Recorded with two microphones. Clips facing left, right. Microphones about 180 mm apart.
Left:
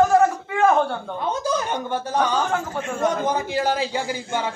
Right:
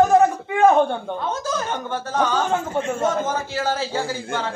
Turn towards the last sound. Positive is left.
turn(degrees=15)  # may be behind; listen again after turning